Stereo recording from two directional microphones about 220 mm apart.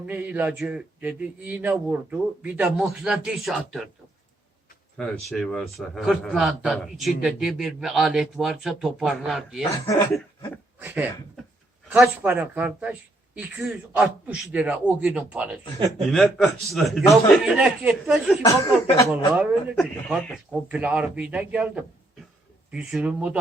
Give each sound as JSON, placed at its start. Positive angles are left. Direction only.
{"t": 0.0, "sound": "a man's voice", "side_deg": -5}
{"t": 4.9, "sound": "a man's voice", "side_deg": 0}
{"t": 10.8, "sound": "a man's voice", "side_deg": -5}
{"t": 18.4, "sound": "speech", "side_deg": 15}
{"t": 19.3, "sound": "a man's voice", "side_deg": -5}